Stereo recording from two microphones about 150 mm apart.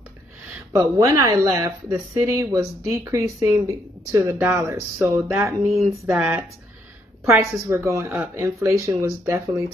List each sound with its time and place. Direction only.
0.7 s speech: 20° right (ahead or behind)
5.6 s a sound: centre (ahead or behind)
7.7 s speech: 20° right (ahead or behind)